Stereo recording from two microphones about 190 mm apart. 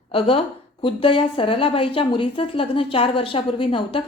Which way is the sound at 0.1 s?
30° left (ahead or behind).